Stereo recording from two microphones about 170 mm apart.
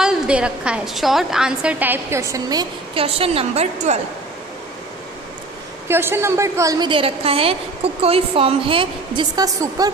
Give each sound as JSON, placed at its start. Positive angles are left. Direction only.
{"t": 0.0, "sound": "a woman's voice", "side_deg": -5}
{"t": 5.9, "sound": "a woman's voice", "side_deg": -15}